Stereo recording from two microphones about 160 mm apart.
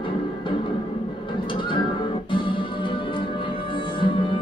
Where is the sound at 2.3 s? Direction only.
30° left (ahead or behind).